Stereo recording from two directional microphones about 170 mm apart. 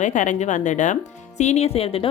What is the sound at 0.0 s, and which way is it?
Speech, 45° left (ahead or behind).